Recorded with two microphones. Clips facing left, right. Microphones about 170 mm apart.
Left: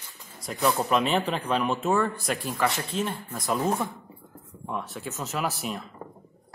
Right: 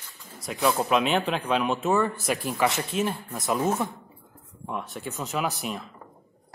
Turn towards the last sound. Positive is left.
turn(degrees=0)  # may be behind; listen again after turning